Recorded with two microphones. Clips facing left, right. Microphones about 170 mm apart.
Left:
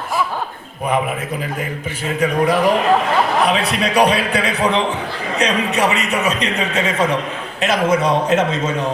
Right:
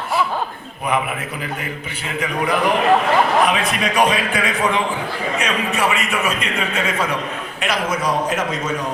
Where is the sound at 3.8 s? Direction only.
35° left (ahead or behind).